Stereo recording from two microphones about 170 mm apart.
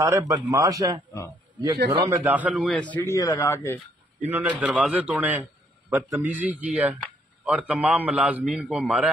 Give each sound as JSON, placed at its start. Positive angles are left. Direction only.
{"t": 0.0, "sound": "a man's voice", "side_deg": -20}
{"t": 4.3, "sound": "a man's voice", "side_deg": -10}